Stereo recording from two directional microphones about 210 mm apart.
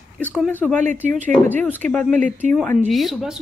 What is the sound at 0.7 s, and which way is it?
Speech, 35° right (ahead or behind).